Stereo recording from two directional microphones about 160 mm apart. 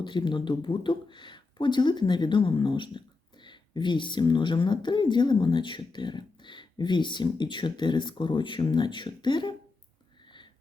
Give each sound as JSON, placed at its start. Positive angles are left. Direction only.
{"t": 0.0, "sound": "speech", "side_deg": 30}